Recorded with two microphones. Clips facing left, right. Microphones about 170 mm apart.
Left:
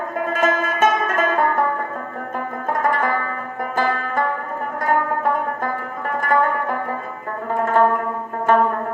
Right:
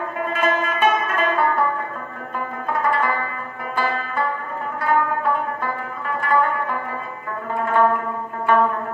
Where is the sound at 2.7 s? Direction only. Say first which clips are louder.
Left 1 dB; 45° left (ahead or behind).